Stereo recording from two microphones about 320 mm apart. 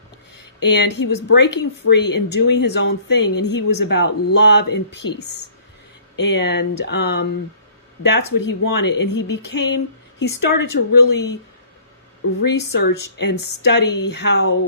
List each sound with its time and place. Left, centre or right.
0.6 s a woman's voice: left
12.4 s a woman's voice: left